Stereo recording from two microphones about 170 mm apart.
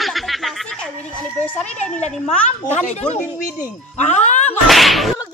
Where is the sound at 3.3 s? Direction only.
10° right (ahead or behind).